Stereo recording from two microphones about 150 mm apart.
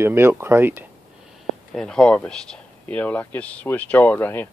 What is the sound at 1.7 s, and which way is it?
Speech, 5° left (ahead or behind).